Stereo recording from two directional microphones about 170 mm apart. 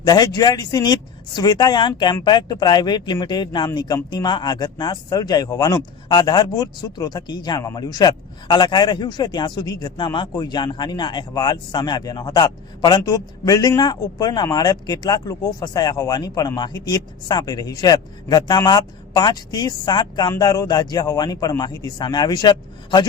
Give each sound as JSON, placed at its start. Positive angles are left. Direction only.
{"t": 0.0, "sound": "speech", "side_deg": 25}